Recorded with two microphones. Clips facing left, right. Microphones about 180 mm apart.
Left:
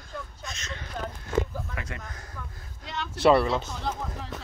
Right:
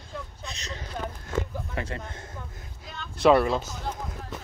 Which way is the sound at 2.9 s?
75° left (ahead or behind).